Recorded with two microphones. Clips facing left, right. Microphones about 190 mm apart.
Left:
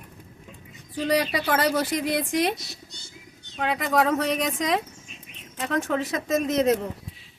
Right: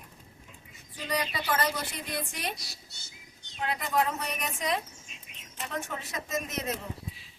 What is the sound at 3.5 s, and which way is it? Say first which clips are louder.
Speech: left 6 dB; 90° left.